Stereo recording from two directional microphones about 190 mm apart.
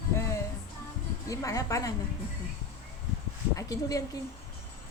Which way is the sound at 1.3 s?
20° left (ahead or behind).